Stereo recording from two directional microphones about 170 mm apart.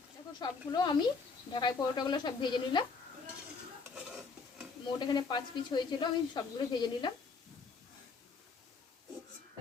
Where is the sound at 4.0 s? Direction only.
Centre (ahead or behind).